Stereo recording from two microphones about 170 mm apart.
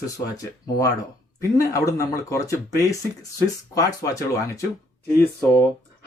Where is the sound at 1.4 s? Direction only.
20° left (ahead or behind).